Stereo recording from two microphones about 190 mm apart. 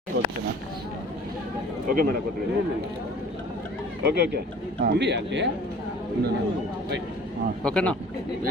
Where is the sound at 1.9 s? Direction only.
50° right (ahead or behind).